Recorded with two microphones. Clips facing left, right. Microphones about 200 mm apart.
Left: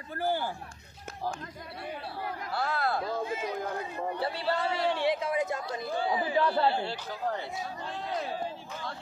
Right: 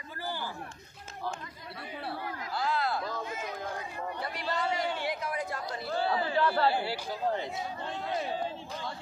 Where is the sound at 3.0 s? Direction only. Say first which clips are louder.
Left 4 dB; 30° left (ahead or behind); by 6.4 s 15° left (ahead or behind).